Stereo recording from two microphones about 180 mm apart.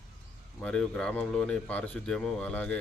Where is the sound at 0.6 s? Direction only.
5° left (ahead or behind).